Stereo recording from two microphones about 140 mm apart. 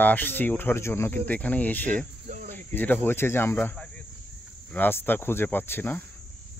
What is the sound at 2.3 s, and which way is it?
Cricket, 60° right (ahead or behind).